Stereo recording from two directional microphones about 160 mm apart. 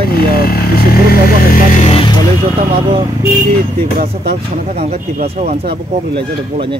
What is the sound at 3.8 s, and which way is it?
Speech, 70° right (ahead or behind).